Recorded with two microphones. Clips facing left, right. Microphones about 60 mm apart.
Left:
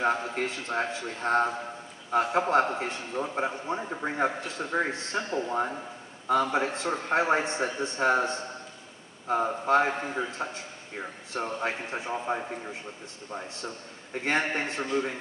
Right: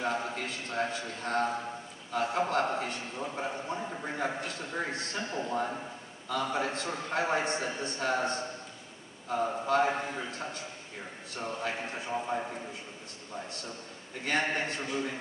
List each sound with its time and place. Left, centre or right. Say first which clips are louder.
0.0 s a man's voice: left 5 dB; left
14.1 s a man's voice: left 3 dB; left